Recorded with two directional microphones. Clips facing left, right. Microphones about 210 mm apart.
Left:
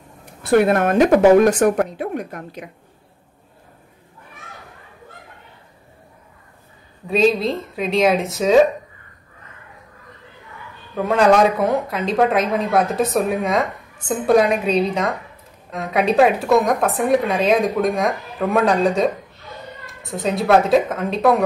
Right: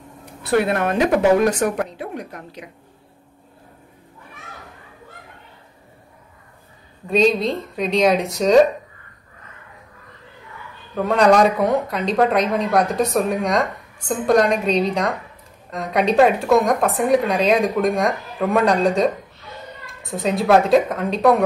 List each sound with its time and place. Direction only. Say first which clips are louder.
0.4 s a woman's voice: left 4 dB; 50° left (ahead or behind)
7.1 s speech: even; centre (ahead or behind)
11.0 s speech: even; centre (ahead or behind)